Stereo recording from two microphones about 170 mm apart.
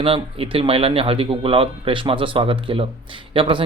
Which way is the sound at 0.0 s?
35° right (ahead or behind).